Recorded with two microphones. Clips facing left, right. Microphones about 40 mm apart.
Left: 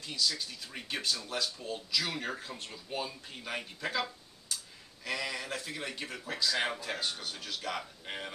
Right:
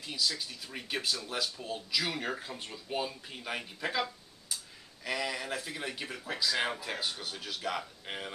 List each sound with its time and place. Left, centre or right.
0.0 s speech: centre
5.0 s speech: centre